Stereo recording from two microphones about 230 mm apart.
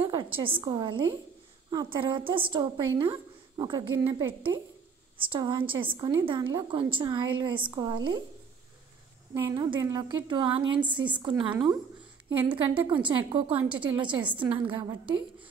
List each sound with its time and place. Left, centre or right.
0.0 s a sound: centre
0.6 s a woman's voice: centre
9.3 s a woman's voice: centre